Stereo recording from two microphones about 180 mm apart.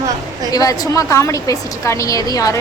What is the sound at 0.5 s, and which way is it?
A woman's voice, 20° left (ahead or behind).